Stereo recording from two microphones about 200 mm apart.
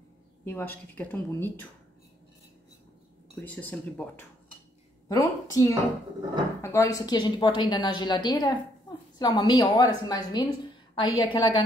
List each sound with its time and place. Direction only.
0.5 s a woman's voice: 10° left (ahead or behind)
3.3 s a woman's voice: 5° left (ahead or behind); by 11.6 s 25° left (ahead or behind)